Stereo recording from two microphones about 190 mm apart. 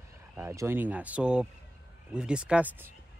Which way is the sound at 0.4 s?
10° right (ahead or behind).